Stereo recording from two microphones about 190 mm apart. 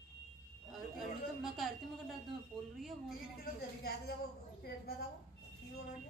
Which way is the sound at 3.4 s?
55° left (ahead or behind).